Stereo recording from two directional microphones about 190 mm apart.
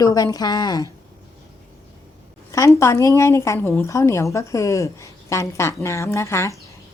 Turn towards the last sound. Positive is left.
turn(degrees=15)  # may be behind; listen again after turning